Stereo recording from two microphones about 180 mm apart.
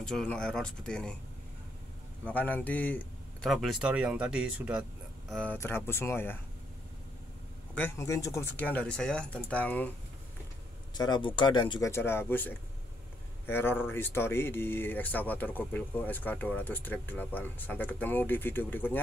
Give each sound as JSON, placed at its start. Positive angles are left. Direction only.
{"t": 0.0, "sound": "speech", "side_deg": 5}
{"t": 2.2, "sound": "speech", "side_deg": 10}
{"t": 5.3, "sound": "speech", "side_deg": 5}
{"t": 7.7, "sound": "speech", "side_deg": 10}
{"t": 11.0, "sound": "speech", "side_deg": 25}
{"t": 11.9, "sound": "speech", "side_deg": 15}